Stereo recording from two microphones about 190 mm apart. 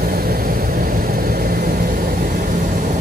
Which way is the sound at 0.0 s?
50° right (ahead or behind).